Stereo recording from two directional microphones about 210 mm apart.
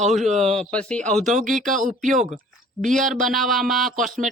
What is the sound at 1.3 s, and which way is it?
Speech, 40° right (ahead or behind).